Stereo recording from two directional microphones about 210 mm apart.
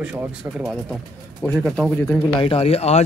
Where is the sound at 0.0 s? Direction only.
5° right (ahead or behind).